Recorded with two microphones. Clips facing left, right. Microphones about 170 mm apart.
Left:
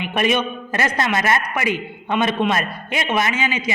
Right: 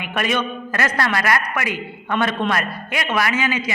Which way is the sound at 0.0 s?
20° left (ahead or behind).